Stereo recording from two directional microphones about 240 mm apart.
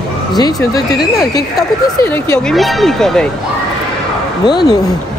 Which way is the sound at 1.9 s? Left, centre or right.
Centre.